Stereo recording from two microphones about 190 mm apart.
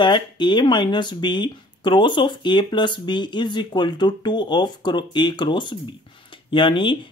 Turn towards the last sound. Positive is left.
turn(degrees=25)  # may be behind; listen again after turning